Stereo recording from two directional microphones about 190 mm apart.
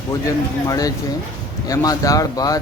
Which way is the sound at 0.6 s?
20° left (ahead or behind).